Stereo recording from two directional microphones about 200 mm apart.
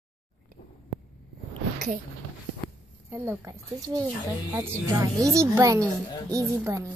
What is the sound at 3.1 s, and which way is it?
Speech, 15° right (ahead or behind).